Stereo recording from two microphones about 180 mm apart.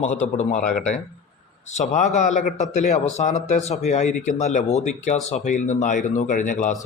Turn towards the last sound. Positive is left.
turn(degrees=45)  # may be behind; listen again after turning